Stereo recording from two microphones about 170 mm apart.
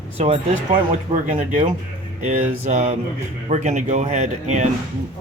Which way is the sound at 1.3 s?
45° right (ahead or behind).